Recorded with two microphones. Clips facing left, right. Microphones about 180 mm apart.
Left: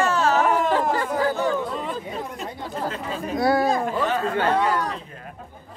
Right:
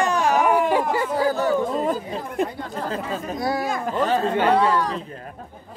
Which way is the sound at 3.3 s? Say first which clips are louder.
Left 6 dB; 65° left (ahead or behind).